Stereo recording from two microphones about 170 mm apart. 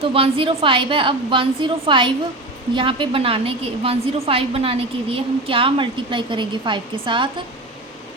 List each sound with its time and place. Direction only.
0.0 s a woman's voice: 35° right (ahead or behind)